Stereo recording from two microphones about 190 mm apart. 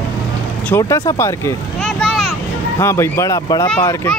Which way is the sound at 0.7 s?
15° left (ahead or behind).